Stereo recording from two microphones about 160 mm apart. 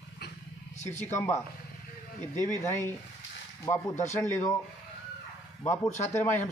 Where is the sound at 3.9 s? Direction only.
50° left (ahead or behind).